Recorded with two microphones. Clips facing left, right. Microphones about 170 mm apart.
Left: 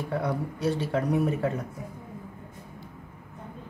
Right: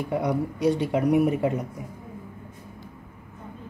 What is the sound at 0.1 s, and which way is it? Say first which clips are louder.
Speech: right 4 dB; 15° right (ahead or behind).